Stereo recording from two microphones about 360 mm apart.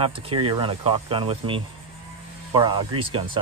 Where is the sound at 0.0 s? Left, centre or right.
Centre.